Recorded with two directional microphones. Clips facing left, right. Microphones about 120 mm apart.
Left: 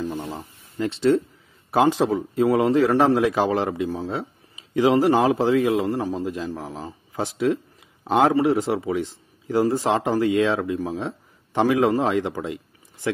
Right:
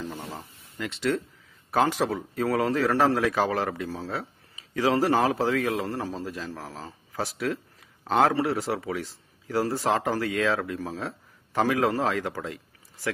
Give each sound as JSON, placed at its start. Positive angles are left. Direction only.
{"t": 0.0, "sound": "a sound", "side_deg": 15}
{"t": 0.7, "sound": "a man's voice", "side_deg": 30}
{"t": 8.0, "sound": "a man's voice", "side_deg": 10}